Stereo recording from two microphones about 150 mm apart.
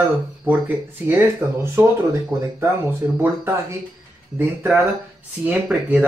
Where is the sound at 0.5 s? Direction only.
15° right (ahead or behind).